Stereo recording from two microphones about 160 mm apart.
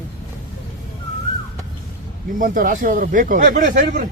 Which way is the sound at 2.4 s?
60° right (ahead or behind).